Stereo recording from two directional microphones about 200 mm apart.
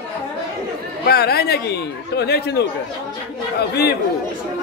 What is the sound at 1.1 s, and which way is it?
Speech, 50° left (ahead or behind).